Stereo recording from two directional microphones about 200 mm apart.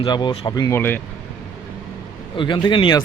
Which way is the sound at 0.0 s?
25° left (ahead or behind).